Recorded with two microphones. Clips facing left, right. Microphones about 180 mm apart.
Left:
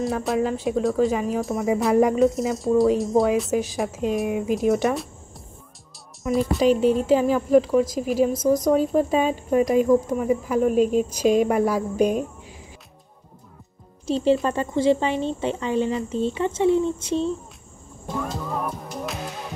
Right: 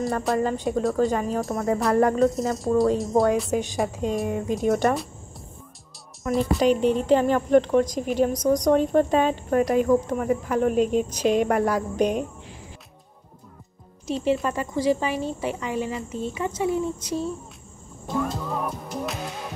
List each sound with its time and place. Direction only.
0.0 s a woman's voice: centre (ahead or behind)
6.3 s a woman's voice: centre (ahead or behind)
10.7 s a woman's voice: 40° left (ahead or behind)
11.0 s speech: 10° left (ahead or behind)
14.0 s speech: 30° left (ahead or behind)
18.4 s music: centre (ahead or behind)